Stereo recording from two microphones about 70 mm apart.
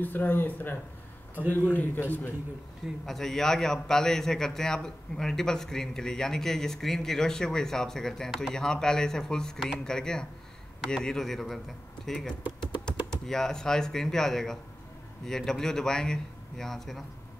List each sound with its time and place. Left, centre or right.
0.0 s a man's voice: left
3.1 s a man's voice: centre